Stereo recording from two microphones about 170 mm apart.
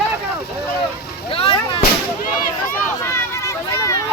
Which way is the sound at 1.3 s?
35° left (ahead or behind).